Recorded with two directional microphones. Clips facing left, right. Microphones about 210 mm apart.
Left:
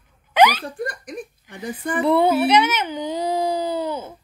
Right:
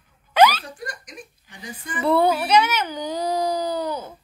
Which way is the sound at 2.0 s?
20° left (ahead or behind).